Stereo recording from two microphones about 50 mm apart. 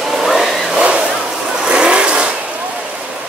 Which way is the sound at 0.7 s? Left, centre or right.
Right.